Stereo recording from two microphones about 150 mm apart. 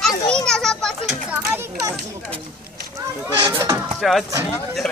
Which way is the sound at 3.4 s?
25° right (ahead or behind).